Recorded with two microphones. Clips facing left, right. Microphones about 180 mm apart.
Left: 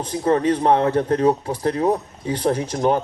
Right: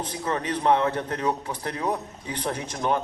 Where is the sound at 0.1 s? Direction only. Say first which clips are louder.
Left 13 dB; 45° left (ahead or behind).